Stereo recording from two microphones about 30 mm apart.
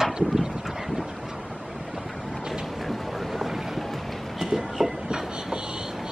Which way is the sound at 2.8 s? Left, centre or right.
Centre.